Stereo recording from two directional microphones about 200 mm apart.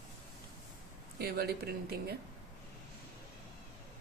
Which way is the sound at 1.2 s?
50° right (ahead or behind).